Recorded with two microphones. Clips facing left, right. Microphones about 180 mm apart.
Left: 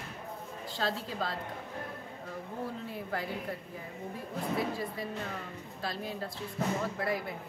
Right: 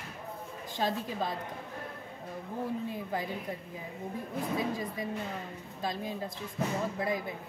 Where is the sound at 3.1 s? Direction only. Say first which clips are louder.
Right 1 dB; 15° right (ahead or behind).